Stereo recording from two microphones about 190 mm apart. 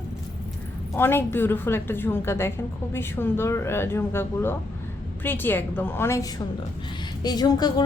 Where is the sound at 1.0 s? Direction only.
10° left (ahead or behind).